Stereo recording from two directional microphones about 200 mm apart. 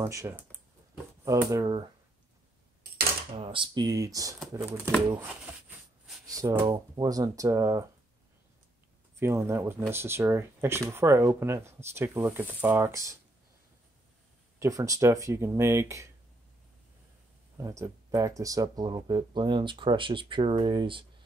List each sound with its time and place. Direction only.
0.0 s speech: 15° right (ahead or behind)
3.3 s speech: 25° right (ahead or behind)
6.2 s speech: 20° right (ahead or behind)
9.2 s speech: 15° right (ahead or behind)
14.6 s speech: 15° right (ahead or behind)
17.6 s speech: 15° right (ahead or behind)